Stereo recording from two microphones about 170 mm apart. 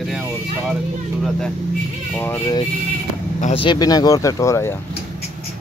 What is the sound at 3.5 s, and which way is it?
Speech, 25° left (ahead or behind).